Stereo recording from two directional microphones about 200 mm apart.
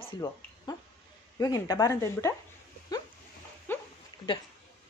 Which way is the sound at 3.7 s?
10° left (ahead or behind).